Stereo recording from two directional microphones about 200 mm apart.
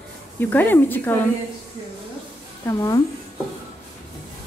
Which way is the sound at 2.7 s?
15° left (ahead or behind).